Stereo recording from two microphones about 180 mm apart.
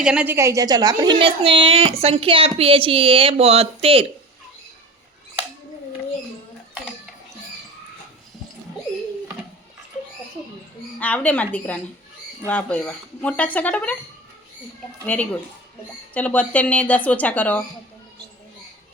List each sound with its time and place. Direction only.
0.0 s a woman's voice: 5° right (ahead or behind); by 4.0 s 35° right (ahead or behind)
11.0 s speech: 10° left (ahead or behind)
15.0 s speech: 10° left (ahead or behind)